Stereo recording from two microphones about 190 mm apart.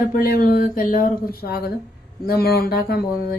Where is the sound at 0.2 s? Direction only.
45° left (ahead or behind).